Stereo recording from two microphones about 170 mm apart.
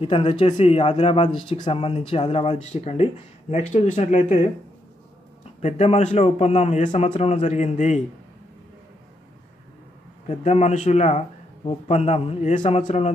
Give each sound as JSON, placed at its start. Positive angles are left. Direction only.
{"t": 0.0, "sound": "speech", "side_deg": 30}
{"t": 5.6, "sound": "speech", "side_deg": 40}
{"t": 10.2, "sound": "speech", "side_deg": 40}